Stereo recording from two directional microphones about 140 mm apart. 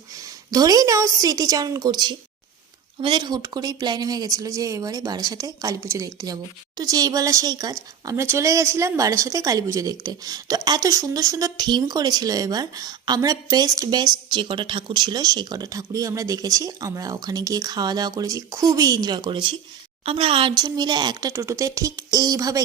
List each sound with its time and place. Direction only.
0.1 s a woman's voice: 25° right (ahead or behind)